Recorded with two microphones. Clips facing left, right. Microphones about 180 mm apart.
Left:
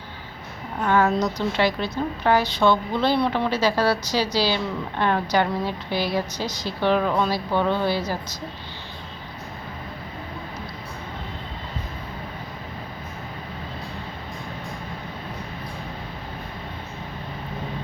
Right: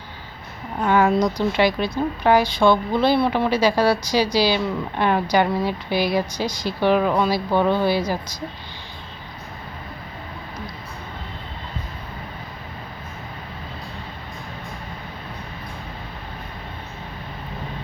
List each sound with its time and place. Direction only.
0.9 s a woman's voice: 15° right (ahead or behind)